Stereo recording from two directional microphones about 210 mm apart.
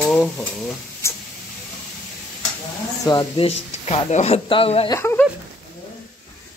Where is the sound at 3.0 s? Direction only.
20° left (ahead or behind).